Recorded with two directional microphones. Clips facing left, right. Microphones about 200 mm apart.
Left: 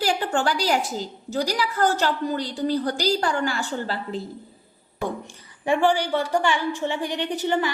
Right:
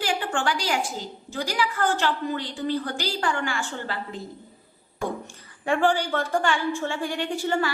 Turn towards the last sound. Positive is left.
turn(degrees=20)  # may be behind; listen again after turning